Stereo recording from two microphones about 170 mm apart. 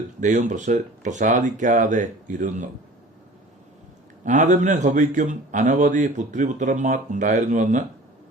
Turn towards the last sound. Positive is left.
turn(degrees=-45)  # may be behind; listen again after turning